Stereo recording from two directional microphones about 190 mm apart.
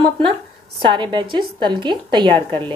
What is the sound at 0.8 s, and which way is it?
Speech, 25° right (ahead or behind).